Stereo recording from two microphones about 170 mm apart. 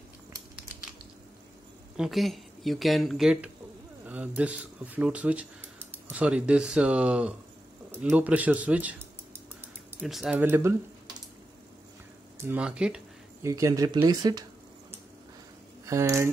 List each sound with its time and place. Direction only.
2.0 s speech: centre (ahead or behind)
9.9 s speech: centre (ahead or behind)
10.4 s speech: 15° right (ahead or behind)
12.4 s speech: 10° right (ahead or behind)
13.4 s speech: 15° right (ahead or behind)
15.8 s speech: 15° right (ahead or behind)